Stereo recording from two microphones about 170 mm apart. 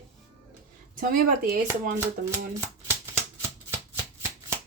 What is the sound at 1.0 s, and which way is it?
Speech, 55° right (ahead or behind).